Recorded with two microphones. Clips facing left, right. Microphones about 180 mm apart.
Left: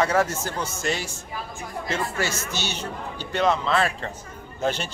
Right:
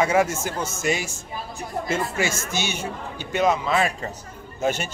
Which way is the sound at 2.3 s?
50° right (ahead or behind).